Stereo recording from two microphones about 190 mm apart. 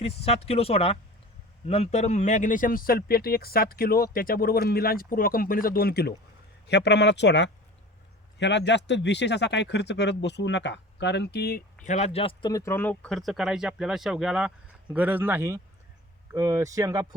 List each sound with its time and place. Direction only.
0.0 s speech: 30° left (ahead or behind); by 11.6 s 55° left (ahead or behind)
11.9 s speech: 35° left (ahead or behind); by 17.2 s 20° right (ahead or behind)